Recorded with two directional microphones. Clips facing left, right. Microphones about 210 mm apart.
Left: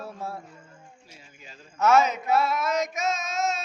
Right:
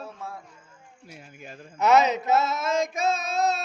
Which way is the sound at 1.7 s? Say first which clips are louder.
Right 1 dB; 15° right (ahead or behind).